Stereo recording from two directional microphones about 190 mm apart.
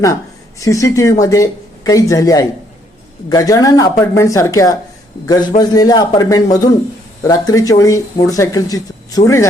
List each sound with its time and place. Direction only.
0.6 s a man's voice: 15° left (ahead or behind)